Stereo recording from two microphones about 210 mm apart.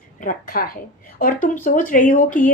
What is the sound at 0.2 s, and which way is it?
A woman's voice, 40° left (ahead or behind).